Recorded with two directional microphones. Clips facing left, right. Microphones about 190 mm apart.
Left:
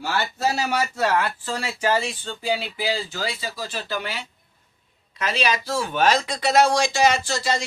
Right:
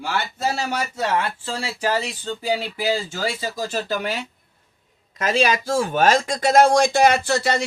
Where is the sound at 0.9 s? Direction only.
25° right (ahead or behind).